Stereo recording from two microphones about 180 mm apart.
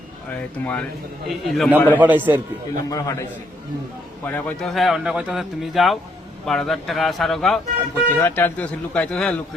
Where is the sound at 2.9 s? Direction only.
20° left (ahead or behind).